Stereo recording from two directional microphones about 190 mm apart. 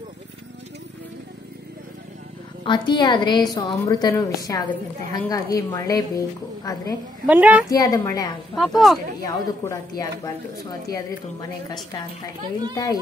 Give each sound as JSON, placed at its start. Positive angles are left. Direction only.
{"t": 2.6, "sound": "a woman's voice", "side_deg": 25}
{"t": 7.2, "sound": "a woman's voice", "side_deg": -10}
{"t": 7.7, "sound": "a woman's voice", "side_deg": 20}
{"t": 8.5, "sound": "speech", "side_deg": 0}
{"t": 9.2, "sound": "a woman's voice", "side_deg": 20}
{"t": 12.7, "sound": "a woman's voice", "side_deg": 20}